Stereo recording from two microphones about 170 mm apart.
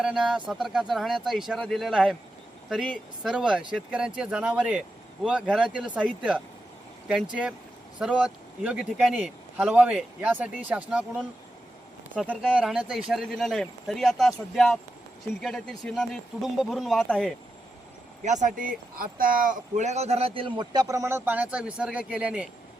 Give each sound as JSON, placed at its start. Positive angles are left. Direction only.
{"t": 0.0, "sound": "a man's voice", "side_deg": -5}
{"t": 12.3, "sound": "speech", "side_deg": -5}
{"t": 18.2, "sound": "speech", "side_deg": -45}